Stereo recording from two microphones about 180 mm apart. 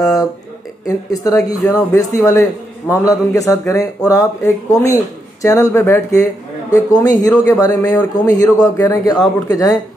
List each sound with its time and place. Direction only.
0.0 s speech: 20° left (ahead or behind)